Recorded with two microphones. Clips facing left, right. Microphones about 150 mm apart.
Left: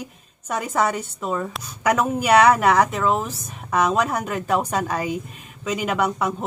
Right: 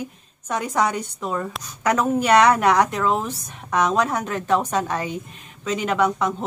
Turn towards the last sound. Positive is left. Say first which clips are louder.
# right 2 dB
turn(degrees=5)  # may be behind; listen again after turning